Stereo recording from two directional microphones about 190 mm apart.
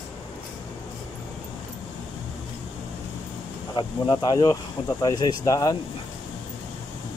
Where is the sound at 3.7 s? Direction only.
20° left (ahead or behind).